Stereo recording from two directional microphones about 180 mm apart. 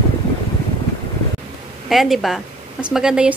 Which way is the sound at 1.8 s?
Centre (ahead or behind).